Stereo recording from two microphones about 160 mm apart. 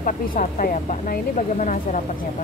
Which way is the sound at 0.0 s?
60° left (ahead or behind).